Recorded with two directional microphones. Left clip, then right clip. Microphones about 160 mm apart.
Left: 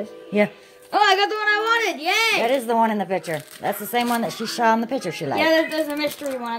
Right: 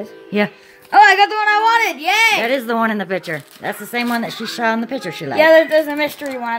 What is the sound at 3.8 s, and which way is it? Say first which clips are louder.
Speech: right 2 dB; 15° right (ahead or behind).